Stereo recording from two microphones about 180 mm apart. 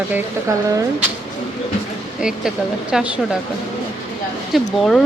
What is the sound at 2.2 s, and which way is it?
Speech, 5° right (ahead or behind).